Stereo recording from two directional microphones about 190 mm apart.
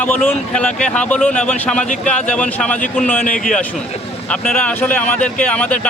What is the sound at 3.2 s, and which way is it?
Speech, 45° left (ahead or behind).